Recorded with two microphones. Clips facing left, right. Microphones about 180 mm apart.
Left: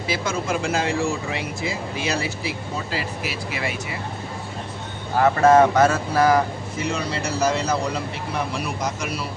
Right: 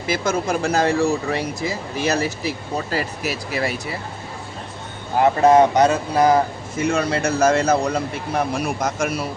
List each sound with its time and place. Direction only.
0.1 s speech: 45° right (ahead or behind)
5.1 s speech: 20° right (ahead or behind)
6.8 s speech: 50° right (ahead or behind)